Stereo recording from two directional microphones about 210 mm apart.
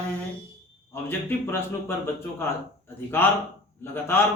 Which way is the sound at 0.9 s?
10° left (ahead or behind).